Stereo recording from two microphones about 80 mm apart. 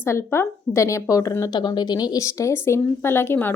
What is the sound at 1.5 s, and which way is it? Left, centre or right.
A woman's voice, left.